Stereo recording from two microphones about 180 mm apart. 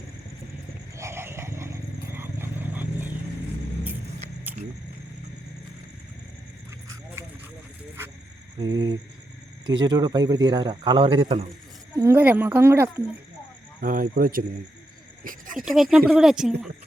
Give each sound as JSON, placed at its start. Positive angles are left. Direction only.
{"t": 0.9, "sound": "vehicle", "side_deg": -15}
{"t": 8.5, "sound": "cricket", "side_deg": -25}
{"t": 9.6, "sound": "a man's voice", "side_deg": -25}
{"t": 11.9, "sound": "speech", "side_deg": -15}
{"t": 13.8, "sound": "speech", "side_deg": -50}
{"t": 15.2, "sound": "a sound", "side_deg": -50}
{"t": 15.5, "sound": "speech", "side_deg": 0}